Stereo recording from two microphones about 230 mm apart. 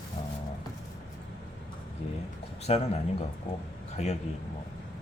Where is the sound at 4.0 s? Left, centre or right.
Left.